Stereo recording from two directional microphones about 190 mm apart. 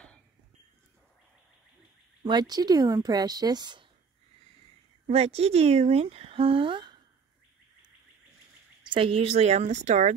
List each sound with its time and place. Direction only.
2.2 s speech: 20° right (ahead or behind)
5.0 s a woman's voice: 35° right (ahead or behind)
8.8 s a woman's voice: 25° right (ahead or behind)